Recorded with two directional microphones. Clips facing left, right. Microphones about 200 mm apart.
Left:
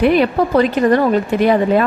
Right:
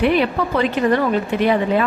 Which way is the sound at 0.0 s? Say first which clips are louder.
Left 4 dB; 40° left (ahead or behind).